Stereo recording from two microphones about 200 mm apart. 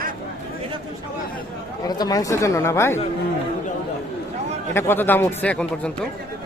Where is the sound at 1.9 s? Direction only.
20° left (ahead or behind).